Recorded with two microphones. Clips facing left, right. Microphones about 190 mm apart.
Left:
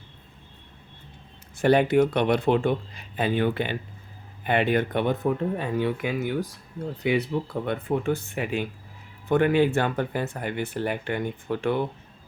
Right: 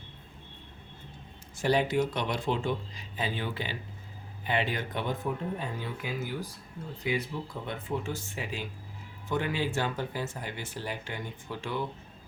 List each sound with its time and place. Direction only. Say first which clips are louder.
1.6 s speech: left 7 dB; 60° left (ahead or behind)